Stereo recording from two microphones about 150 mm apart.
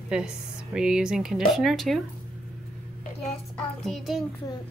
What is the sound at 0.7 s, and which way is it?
A woman's voice, 5° right (ahead or behind).